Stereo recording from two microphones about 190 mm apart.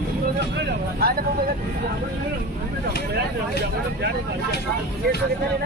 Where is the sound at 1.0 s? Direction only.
55° right (ahead or behind).